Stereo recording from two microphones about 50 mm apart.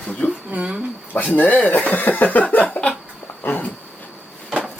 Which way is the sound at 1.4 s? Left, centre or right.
Left.